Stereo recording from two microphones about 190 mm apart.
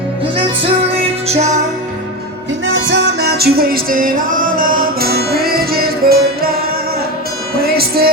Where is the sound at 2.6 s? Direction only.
80° right.